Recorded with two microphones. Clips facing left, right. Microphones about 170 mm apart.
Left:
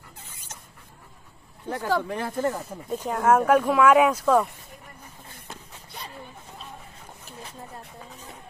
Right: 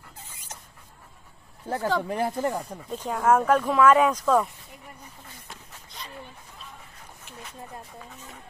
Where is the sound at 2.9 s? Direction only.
5° left (ahead or behind).